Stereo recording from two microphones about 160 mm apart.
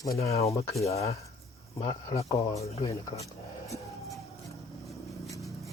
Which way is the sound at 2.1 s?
35° left (ahead or behind).